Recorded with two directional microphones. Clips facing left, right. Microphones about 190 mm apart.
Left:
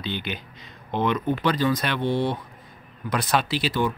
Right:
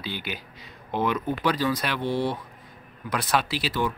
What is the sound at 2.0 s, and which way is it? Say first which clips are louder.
Speech: left 2 dB; 25° left (ahead or behind).